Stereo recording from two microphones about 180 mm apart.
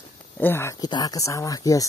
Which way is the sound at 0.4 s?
10° left (ahead or behind).